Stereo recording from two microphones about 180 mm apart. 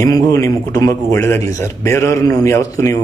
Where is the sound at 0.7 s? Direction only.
20° left (ahead or behind).